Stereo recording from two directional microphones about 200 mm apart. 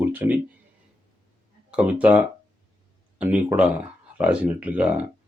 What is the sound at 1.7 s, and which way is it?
Speech, 5° right (ahead or behind).